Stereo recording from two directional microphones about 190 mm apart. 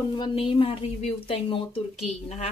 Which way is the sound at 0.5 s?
30° left (ahead or behind).